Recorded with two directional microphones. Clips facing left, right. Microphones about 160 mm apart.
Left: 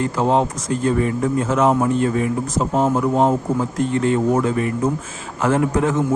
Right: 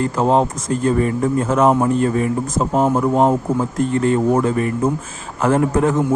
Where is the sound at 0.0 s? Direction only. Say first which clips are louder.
Right 2 dB; 40° right (ahead or behind).